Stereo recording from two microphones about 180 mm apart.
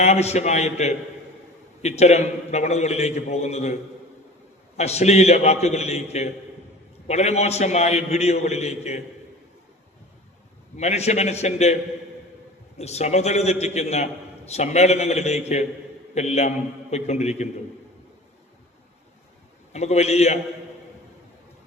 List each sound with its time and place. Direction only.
0.0 s a man's voice: 35° left (ahead or behind)
4.8 s a man's voice: 35° left (ahead or behind)
10.8 s a man's voice: 35° left (ahead or behind)
19.7 s a man's voice: 40° left (ahead or behind)